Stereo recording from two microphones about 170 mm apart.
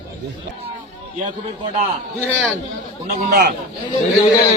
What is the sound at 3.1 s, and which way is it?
Speech, 55° right (ahead or behind).